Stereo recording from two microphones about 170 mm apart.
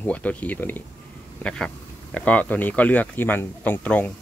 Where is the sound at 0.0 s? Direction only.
10° left (ahead or behind).